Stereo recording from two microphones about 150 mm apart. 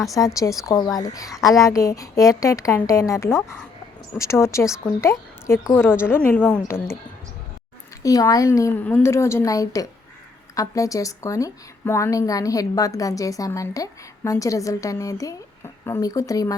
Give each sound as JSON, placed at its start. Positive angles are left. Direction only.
{"t": 0.1, "sound": "a woman's voice", "side_deg": 20}
{"t": 8.0, "sound": "a woman's voice", "side_deg": 25}